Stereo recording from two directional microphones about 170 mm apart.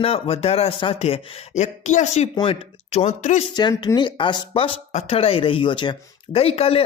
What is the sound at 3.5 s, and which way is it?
Speech, 25° left (ahead or behind).